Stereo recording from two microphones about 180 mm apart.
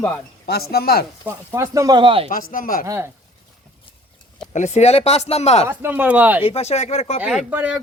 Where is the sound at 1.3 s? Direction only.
15° right (ahead or behind).